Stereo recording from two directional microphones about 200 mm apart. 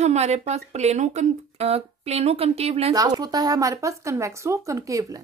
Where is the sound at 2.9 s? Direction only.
20° right (ahead or behind).